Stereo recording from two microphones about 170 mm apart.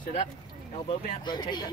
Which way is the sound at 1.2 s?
25° left (ahead or behind).